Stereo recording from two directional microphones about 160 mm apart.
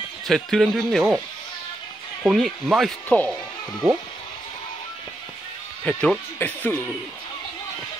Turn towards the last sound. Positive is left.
turn(degrees=10)  # may be behind; listen again after turning